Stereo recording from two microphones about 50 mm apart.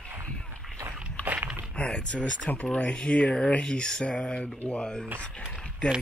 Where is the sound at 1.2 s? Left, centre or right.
Left.